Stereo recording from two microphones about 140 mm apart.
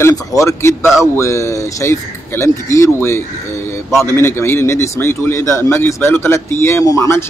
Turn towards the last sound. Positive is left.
turn(degrees=20)  # may be behind; listen again after turning